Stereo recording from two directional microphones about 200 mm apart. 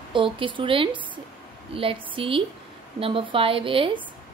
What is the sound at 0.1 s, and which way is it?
Speech, 25° right (ahead or behind).